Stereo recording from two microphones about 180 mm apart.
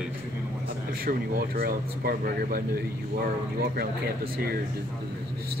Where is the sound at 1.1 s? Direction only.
55° right (ahead or behind).